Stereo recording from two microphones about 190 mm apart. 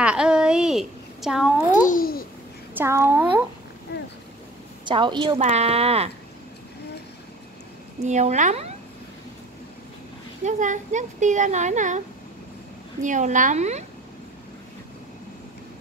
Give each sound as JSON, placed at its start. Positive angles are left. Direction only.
{"t": 0.0, "sound": "a sound", "side_deg": -5}
{"t": 1.7, "sound": "a child's voice", "side_deg": 45}
{"t": 2.7, "sound": "a child's voice", "side_deg": -10}
{"t": 4.8, "sound": "a woman's voice", "side_deg": -25}
{"t": 5.4, "sound": "speech", "side_deg": -35}
{"t": 8.0, "sound": "speech", "side_deg": -35}
{"t": 10.4, "sound": "speech", "side_deg": -40}
{"t": 13.0, "sound": "speech", "side_deg": -40}